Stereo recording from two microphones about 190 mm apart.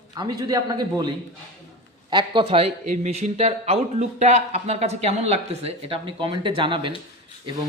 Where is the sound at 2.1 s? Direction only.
25° right (ahead or behind).